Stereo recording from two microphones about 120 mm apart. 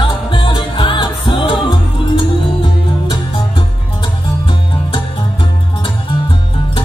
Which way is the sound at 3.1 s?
40° left (ahead or behind).